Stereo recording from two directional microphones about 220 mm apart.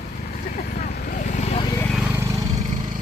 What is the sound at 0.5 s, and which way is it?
Vehicle, 35° left (ahead or behind).